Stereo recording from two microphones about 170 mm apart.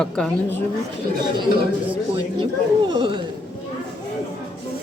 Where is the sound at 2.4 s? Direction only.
30° right (ahead or behind).